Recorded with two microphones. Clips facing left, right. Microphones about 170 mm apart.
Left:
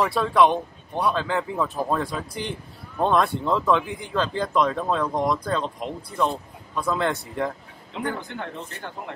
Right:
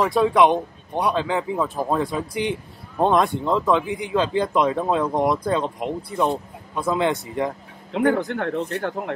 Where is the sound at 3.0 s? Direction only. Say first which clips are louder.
Right 2 dB; 20° right (ahead or behind).